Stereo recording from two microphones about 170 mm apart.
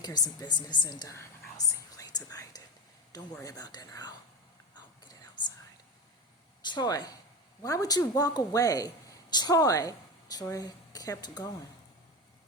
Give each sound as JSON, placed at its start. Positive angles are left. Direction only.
{"t": 0.0, "sound": "whispering", "side_deg": 25}
{"t": 3.4, "sound": "speech", "side_deg": 25}
{"t": 4.7, "sound": "whispering", "side_deg": 25}
{"t": 6.6, "sound": "speech", "side_deg": 25}